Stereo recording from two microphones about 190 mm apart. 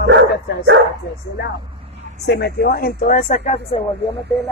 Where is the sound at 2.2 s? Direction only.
60° left (ahead or behind); by 3.8 s 30° left (ahead or behind).